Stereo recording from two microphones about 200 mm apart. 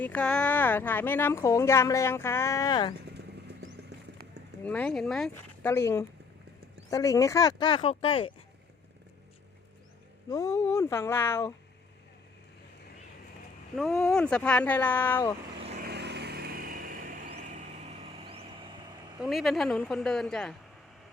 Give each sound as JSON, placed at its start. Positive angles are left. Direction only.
{"t": 0.0, "sound": "speech", "side_deg": 5}
{"t": 3.1, "sound": "vehicle", "side_deg": -55}
{"t": 4.6, "sound": "speech", "side_deg": 5}
{"t": 10.2, "sound": "speech", "side_deg": 15}
{"t": 13.7, "sound": "a woman's voice", "side_deg": 0}
{"t": 15.8, "sound": "vehicle", "side_deg": -55}
{"t": 17.5, "sound": "vehicle", "side_deg": -35}
{"t": 19.2, "sound": "a woman's voice", "side_deg": 0}